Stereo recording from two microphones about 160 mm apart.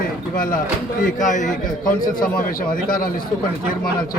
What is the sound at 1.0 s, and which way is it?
Speech, 55° left (ahead or behind).